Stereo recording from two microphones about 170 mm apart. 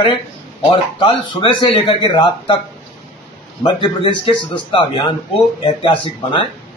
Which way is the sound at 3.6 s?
30° left (ahead or behind).